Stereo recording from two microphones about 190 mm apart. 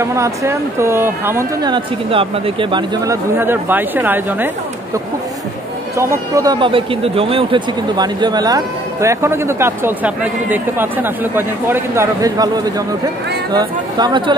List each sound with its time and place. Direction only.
0.0 s speech: 15° right (ahead or behind)
1.7 s speech: 30° right (ahead or behind)
3.3 s speech: 10° right (ahead or behind)
5.9 s speech: 15° right (ahead or behind)